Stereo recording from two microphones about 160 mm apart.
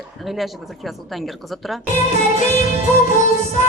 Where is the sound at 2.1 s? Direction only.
50° left (ahead or behind).